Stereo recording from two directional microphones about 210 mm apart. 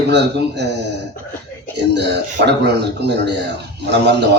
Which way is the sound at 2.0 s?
55° right (ahead or behind).